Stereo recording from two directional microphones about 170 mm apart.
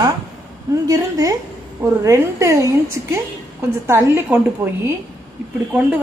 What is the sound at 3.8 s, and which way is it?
Speech, 15° right (ahead or behind).